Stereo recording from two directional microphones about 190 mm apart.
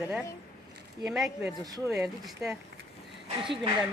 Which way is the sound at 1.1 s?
5° right (ahead or behind).